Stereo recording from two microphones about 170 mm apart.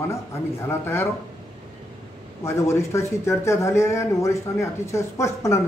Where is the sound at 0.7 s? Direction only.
15° left (ahead or behind).